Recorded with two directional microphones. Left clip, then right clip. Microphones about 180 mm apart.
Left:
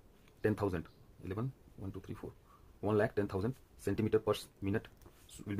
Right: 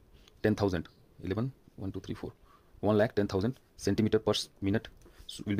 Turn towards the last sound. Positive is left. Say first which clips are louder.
# right 8 dB
turn(degrees=-45)  # may be behind; listen again after turning